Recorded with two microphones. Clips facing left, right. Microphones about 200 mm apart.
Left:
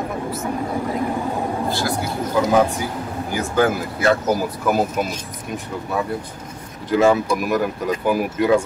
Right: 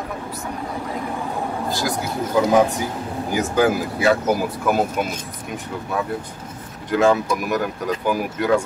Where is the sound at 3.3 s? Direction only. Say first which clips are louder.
Right 1 dB; 15° right (ahead or behind).